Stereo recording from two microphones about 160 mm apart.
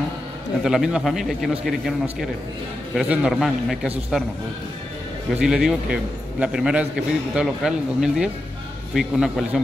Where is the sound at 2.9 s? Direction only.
5° right (ahead or behind).